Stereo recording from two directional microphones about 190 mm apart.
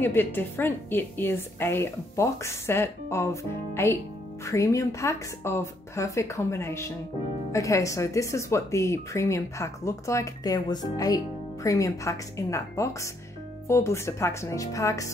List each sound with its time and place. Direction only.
0.0 s a woman's voice: 10° left (ahead or behind)